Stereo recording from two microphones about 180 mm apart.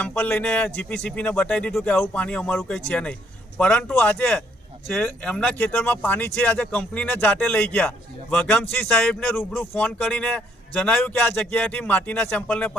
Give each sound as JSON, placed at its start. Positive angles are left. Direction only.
{"t": 0.0, "sound": "a man's voice", "side_deg": 5}